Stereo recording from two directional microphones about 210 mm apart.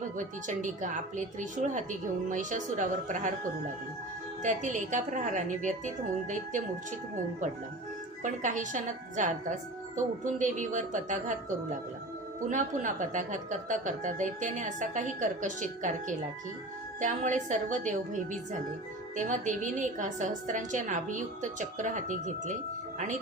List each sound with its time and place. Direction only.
0.2 s speech: 35° right (ahead or behind)
4.4 s speech: 35° right (ahead or behind)
8.2 s speech: 35° right (ahead or behind)